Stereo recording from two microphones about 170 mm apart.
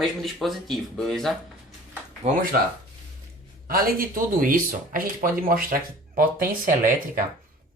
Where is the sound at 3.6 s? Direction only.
55° right (ahead or behind).